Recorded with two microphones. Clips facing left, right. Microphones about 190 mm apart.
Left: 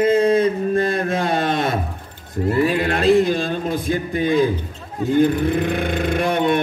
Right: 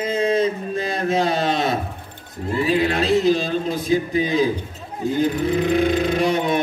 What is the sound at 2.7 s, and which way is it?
A man's voice, 55° left (ahead or behind).